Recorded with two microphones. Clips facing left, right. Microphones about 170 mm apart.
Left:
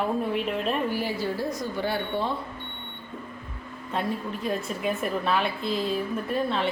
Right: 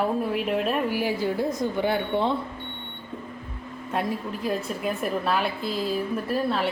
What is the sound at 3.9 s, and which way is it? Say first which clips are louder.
A woman's voice: right 1 dB; 5° right (ahead or behind).